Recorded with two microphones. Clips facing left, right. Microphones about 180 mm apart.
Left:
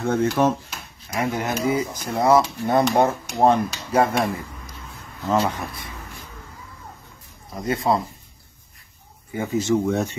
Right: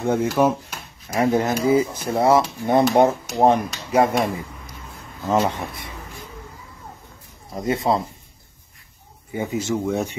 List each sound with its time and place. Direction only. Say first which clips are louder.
0.0 s speech: right 1 dB; 15° right (ahead or behind)
1.1 s speech: right 5 dB; 30° right (ahead or behind); by 4.1 s 15° right (ahead or behind)
5.3 s speech: right 1 dB; 25° right (ahead or behind)
7.6 s speech: right 1 dB; 25° right (ahead or behind)
9.3 s speech: left 2 dB; 15° right (ahead or behind)